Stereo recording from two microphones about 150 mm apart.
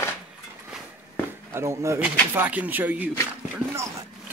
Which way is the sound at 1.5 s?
20° right (ahead or behind).